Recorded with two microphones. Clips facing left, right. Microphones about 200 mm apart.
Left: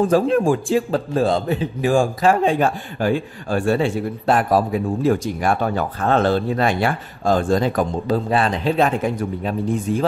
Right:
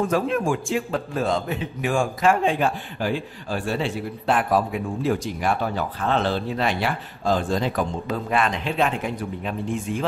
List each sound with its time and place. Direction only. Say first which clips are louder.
0.0 s a man's voice: left 6 dB; 35° left (ahead or behind)